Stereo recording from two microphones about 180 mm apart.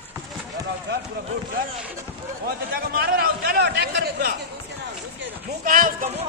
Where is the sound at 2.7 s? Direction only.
60° right (ahead or behind).